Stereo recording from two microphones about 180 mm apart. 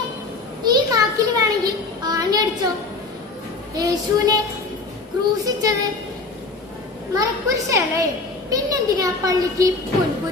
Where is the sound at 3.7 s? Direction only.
20° right (ahead or behind).